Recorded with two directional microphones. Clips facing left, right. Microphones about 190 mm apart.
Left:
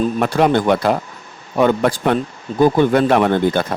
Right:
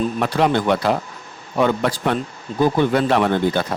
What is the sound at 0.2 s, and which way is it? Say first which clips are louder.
Speech: left 3 dB; 50° left (ahead or behind).